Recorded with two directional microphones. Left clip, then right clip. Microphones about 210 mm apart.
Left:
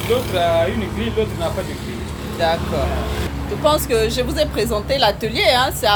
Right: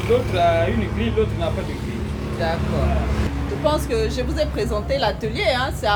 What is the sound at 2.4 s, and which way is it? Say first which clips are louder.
Speech: left 6 dB; 35° left (ahead or behind).